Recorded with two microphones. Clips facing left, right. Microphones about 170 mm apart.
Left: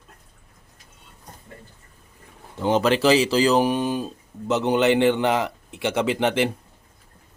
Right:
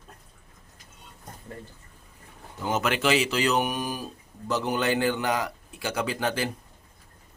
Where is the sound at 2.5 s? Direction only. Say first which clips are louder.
Left 7 dB; 30° left (ahead or behind).